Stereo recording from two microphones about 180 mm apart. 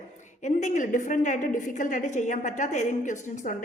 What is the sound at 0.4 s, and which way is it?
A woman's voice, 40° left (ahead or behind).